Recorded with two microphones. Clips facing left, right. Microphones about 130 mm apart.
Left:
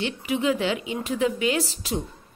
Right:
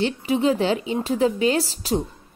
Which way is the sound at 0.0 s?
35° right (ahead or behind).